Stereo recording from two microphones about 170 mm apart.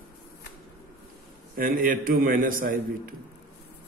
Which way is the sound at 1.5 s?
55° right (ahead or behind).